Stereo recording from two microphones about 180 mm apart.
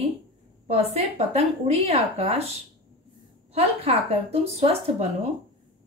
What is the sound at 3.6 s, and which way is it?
A woman's voice, 35° right (ahead or behind).